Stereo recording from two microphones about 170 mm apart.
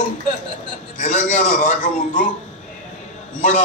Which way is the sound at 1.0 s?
45° left (ahead or behind).